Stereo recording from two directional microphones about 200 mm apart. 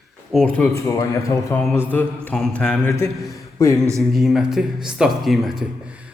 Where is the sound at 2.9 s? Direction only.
15° left (ahead or behind).